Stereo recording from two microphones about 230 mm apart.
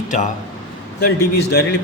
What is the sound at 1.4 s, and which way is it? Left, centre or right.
Speech, left.